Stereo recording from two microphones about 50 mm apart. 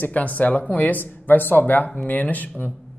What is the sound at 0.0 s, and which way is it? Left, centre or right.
Speech, left.